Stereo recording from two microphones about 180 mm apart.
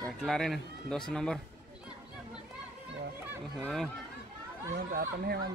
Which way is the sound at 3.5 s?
Centre (ahead or behind).